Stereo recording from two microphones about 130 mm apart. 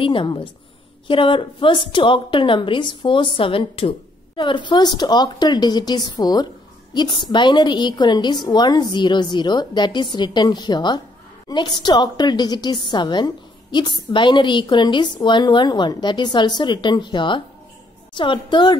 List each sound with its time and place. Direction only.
0.0 s a woman's voice: 40° left (ahead or behind)